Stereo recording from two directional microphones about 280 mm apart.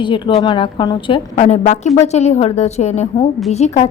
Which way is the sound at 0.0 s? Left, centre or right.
Centre.